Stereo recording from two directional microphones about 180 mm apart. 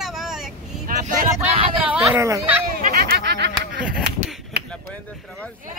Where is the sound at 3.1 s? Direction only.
70° right (ahead or behind).